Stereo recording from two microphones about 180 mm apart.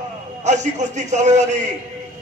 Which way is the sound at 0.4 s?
40° right (ahead or behind).